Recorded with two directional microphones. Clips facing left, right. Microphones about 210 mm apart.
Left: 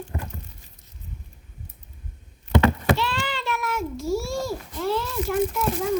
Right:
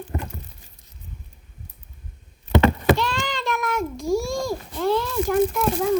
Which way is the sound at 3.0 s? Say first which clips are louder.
Right 2 dB; 45° right (ahead or behind).